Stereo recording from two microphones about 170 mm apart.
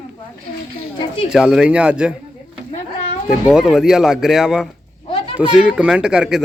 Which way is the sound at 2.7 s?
45° left (ahead or behind).